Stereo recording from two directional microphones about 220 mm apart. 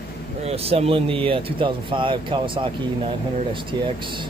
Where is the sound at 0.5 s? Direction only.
25° right (ahead or behind).